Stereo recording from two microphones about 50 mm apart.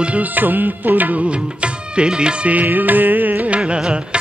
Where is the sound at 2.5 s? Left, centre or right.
Right.